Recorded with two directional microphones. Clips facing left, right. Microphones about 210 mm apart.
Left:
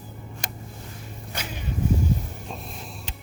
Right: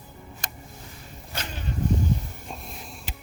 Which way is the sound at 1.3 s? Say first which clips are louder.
Even; 10° left (ahead or behind).